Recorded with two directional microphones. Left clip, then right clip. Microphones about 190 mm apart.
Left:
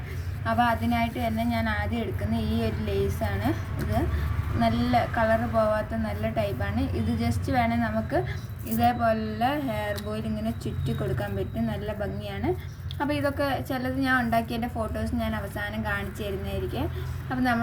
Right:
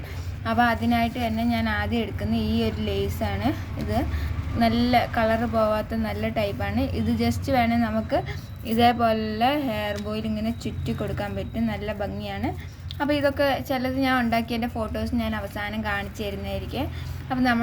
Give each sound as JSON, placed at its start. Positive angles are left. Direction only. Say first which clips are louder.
{"t": 0.4, "sound": "a woman's voice", "louder": "right 2 dB", "side_deg": -45}
{"t": 4.6, "sound": "a woman's voice", "louder": "right 3 dB", "side_deg": -45}